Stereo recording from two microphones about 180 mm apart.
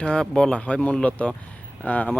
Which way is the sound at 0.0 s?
5° left (ahead or behind).